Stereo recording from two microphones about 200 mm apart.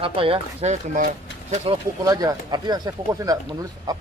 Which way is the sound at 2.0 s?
20° right (ahead or behind).